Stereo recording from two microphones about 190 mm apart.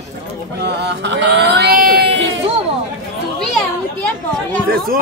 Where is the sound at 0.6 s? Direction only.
65° right (ahead or behind).